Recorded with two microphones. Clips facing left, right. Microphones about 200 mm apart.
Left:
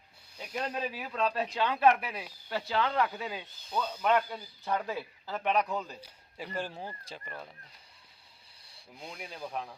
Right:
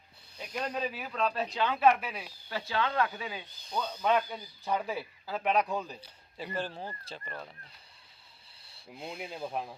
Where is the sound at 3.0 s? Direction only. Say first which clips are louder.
Left 1 dB; centre (ahead or behind).